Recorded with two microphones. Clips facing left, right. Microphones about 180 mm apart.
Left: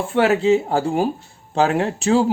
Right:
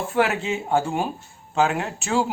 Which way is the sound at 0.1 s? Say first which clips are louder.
Left 8 dB; 30° left (ahead or behind).